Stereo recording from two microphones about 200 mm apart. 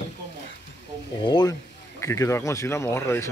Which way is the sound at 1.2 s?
20° left (ahead or behind).